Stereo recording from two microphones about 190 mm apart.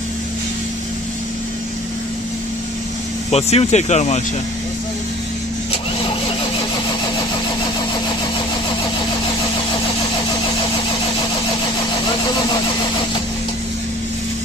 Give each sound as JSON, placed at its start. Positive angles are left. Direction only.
{"t": 3.3, "sound": "speech", "side_deg": 35}